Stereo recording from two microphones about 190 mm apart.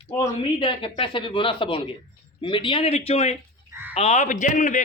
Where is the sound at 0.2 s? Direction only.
25° left (ahead or behind).